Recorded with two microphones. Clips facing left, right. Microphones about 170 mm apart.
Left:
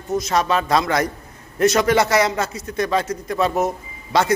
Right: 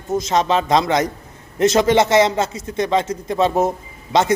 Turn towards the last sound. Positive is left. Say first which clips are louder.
# right 2 dB
turn(degrees=-20)  # may be behind; listen again after turning